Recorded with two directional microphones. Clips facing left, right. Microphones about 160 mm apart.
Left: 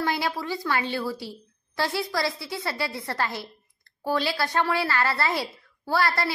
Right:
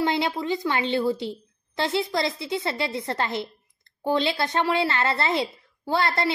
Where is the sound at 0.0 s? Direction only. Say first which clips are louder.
Right 3 dB; 20° right (ahead or behind).